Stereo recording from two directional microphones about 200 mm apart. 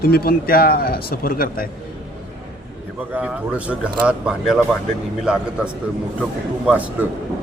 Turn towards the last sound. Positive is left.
turn(degrees=-5)  # may be behind; listen again after turning